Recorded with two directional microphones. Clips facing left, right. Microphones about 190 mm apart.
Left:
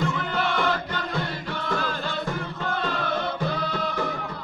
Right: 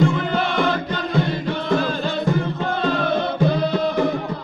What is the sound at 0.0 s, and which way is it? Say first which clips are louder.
Music: right 7 dB; 25° right (ahead or behind).